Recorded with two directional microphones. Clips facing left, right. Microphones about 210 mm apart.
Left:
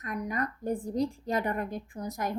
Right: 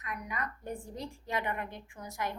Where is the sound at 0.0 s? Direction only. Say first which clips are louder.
Left 7 dB; 40° left (ahead or behind).